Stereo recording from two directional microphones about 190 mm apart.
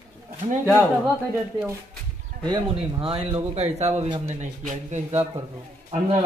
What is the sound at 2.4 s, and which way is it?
A man's voice, 30° right (ahead or behind).